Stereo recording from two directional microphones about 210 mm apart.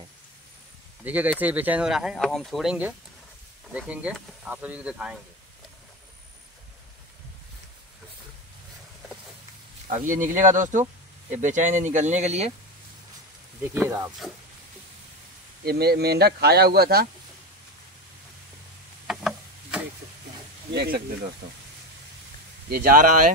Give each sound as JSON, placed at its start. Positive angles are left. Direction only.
{"t": 1.0, "sound": "speech", "side_deg": -5}
{"t": 9.8, "sound": "speech", "side_deg": -40}
{"t": 13.7, "sound": "speech", "side_deg": -10}
{"t": 15.6, "sound": "speech", "side_deg": -45}
{"t": 19.0, "sound": "a sound", "side_deg": -5}
{"t": 20.7, "sound": "speech", "side_deg": -50}
{"t": 22.7, "sound": "speech", "side_deg": -45}